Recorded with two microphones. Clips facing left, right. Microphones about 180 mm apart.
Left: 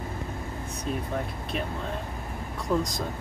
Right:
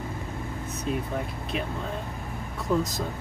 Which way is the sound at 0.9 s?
Centre (ahead or behind).